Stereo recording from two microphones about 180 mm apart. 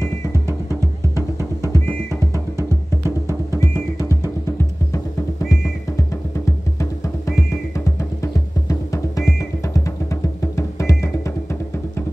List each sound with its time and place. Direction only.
1.6 s music: 15° left (ahead or behind)
3.5 s drum: 20° left (ahead or behind)
5.5 s music: 15° left (ahead or behind)